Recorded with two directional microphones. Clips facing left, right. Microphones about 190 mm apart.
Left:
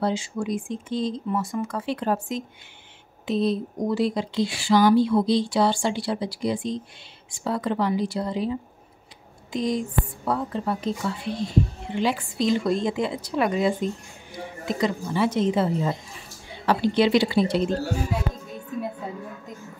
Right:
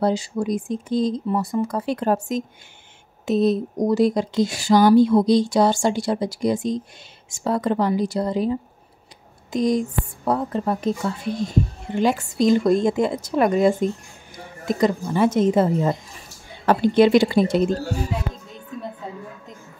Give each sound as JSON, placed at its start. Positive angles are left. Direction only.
{"t": 0.0, "sound": "a woman's voice", "side_deg": -40}